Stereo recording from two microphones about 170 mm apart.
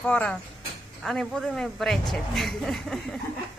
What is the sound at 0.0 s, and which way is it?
A man's voice, 10° left (ahead or behind).